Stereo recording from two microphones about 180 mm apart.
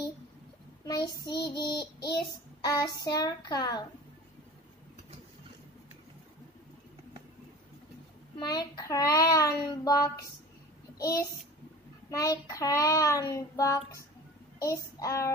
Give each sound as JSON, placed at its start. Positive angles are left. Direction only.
{"t": 0.8, "sound": "a child's voice", "side_deg": 20}
{"t": 8.4, "sound": "a child's voice", "side_deg": 20}